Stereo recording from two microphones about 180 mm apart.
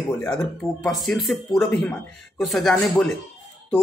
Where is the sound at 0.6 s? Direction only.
Centre (ahead or behind).